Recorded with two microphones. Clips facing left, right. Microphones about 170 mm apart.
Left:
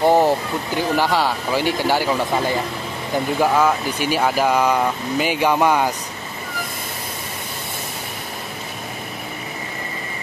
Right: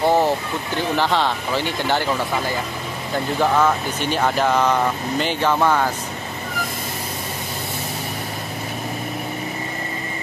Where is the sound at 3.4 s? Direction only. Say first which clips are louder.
Even; 10° left (ahead or behind).